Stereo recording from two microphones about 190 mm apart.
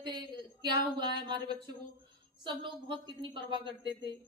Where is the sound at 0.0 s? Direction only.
25° right (ahead or behind).